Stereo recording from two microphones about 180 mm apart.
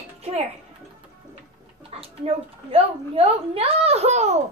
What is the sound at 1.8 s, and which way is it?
A woman's voice, 30° right (ahead or behind).